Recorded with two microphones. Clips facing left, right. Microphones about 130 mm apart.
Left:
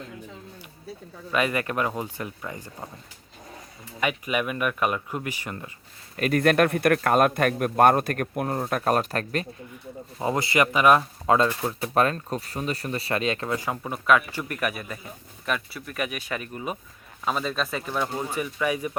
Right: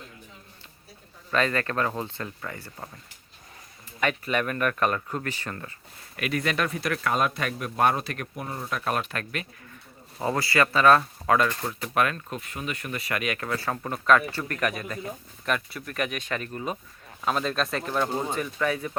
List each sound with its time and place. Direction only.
1.3 s speech: 10° left (ahead or behind)
4.0 s speech: 10° left (ahead or behind)
6.1 s a man's voice: 45° left (ahead or behind)
10.2 s speech: 20° left (ahead or behind)
11.7 s speech: 30° left (ahead or behind); by 18.9 s 10° left (ahead or behind)